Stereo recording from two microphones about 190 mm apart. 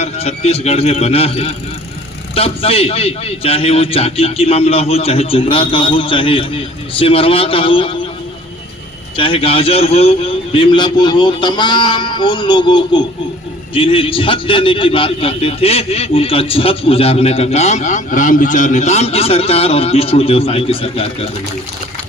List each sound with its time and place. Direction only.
0.0 s a man's voice: 35° left (ahead or behind)
9.1 s a man's voice: 30° left (ahead or behind)